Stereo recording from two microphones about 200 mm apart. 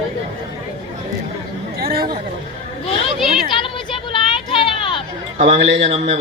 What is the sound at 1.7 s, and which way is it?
Chatter, 50° right (ahead or behind).